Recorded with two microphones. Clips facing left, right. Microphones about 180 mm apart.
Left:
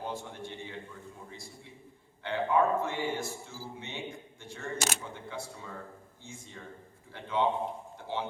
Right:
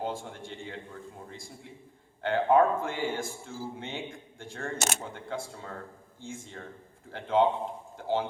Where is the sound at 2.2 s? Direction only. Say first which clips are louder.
Right 5 dB; 55° right (ahead or behind).